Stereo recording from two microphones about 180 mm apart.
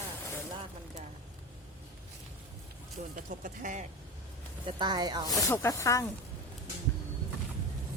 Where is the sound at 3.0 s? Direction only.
45° right (ahead or behind).